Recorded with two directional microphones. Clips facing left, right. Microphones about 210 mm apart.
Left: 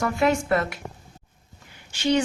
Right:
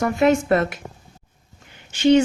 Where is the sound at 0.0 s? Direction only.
25° right (ahead or behind).